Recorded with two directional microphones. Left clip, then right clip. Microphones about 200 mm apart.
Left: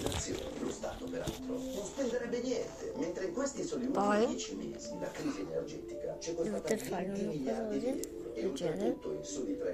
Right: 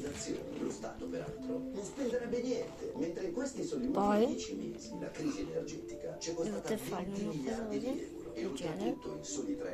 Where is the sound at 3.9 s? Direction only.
45° right (ahead or behind).